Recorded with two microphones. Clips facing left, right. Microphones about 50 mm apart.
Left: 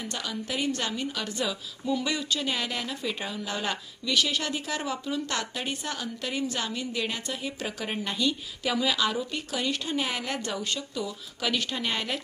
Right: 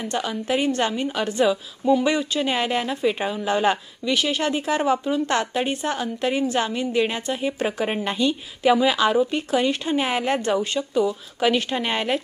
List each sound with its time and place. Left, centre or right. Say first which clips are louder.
0.0 s a woman's voice: right 8 dB; right